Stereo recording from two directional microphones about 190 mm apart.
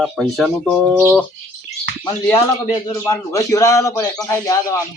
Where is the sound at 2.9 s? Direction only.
15° left (ahead or behind).